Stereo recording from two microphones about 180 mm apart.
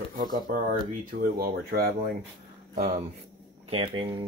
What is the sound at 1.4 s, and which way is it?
Speech, 55° right (ahead or behind).